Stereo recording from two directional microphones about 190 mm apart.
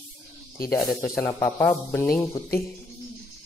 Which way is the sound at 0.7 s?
15° left (ahead or behind).